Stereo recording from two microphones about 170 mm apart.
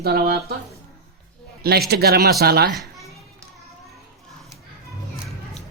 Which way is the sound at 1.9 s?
70° right (ahead or behind).